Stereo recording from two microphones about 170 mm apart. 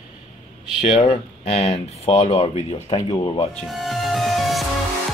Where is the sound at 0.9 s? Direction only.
35° left (ahead or behind).